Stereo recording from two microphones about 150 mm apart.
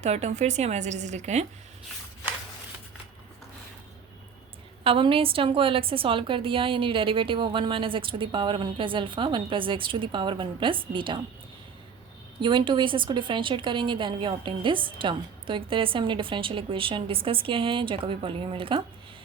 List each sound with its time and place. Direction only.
0.0 s a woman's voice: 50° right (ahead or behind)
4.8 s a woman's voice: 35° right (ahead or behind)
12.4 s a woman's voice: 35° right (ahead or behind)